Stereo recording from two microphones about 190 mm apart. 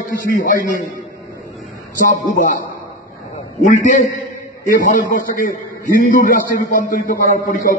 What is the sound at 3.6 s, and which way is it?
A man's voice, 40° left (ahead or behind).